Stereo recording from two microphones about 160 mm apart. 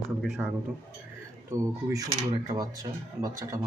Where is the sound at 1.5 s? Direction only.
20° right (ahead or behind).